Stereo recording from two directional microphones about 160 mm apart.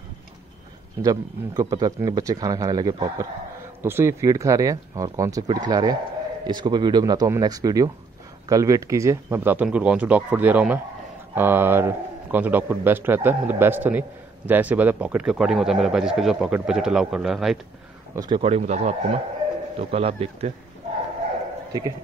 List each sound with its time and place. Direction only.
1.0 s a man's voice: 20° right (ahead or behind); by 17.6 s centre (ahead or behind)
18.1 s a man's voice: 25° right (ahead or behind)
18.4 s a man's voice: 40° right (ahead or behind)